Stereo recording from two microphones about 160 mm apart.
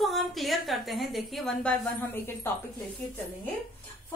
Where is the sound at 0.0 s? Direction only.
Centre (ahead or behind).